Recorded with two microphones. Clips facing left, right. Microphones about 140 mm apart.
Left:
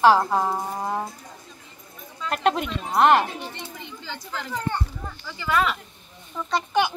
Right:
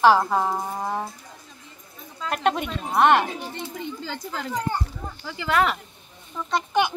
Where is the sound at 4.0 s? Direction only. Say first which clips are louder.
Right 3 dB; 40° right (ahead or behind).